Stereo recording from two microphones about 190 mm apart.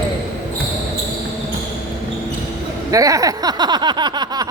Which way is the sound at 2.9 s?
15° right (ahead or behind).